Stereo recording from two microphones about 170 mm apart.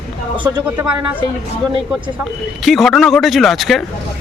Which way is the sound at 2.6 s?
Centre (ahead or behind).